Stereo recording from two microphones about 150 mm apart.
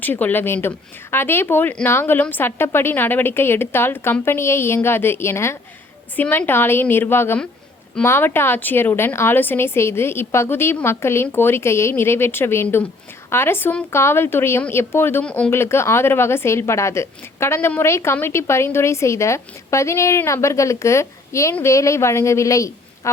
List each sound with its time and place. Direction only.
0.0 s a woman's voice: 10° left (ahead or behind)